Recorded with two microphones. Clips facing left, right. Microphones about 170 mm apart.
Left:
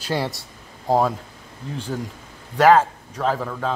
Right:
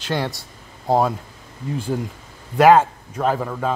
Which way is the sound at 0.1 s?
5° left (ahead or behind).